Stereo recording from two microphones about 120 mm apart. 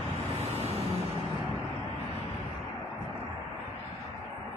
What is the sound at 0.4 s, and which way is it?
Vehicle, 60° right (ahead or behind).